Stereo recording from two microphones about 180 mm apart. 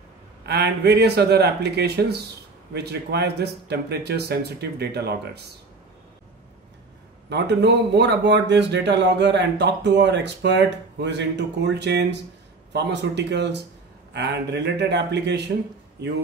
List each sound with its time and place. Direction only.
0.5 s speech: 65° right (ahead or behind)
7.2 s speech: 70° right (ahead or behind)